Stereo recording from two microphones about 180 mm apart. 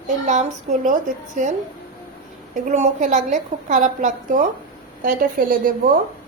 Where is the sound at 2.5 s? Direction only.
40° right (ahead or behind).